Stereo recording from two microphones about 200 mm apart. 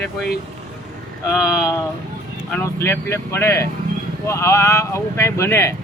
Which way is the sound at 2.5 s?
10° left (ahead or behind).